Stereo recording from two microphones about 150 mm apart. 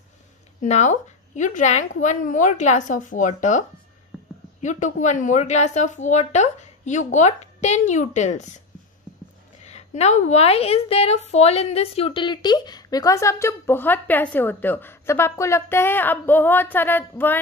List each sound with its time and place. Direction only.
0.6 s a woman's voice: 50° left (ahead or behind)
9.7 s a woman's voice: 45° left (ahead or behind); by 17.4 s 15° left (ahead or behind)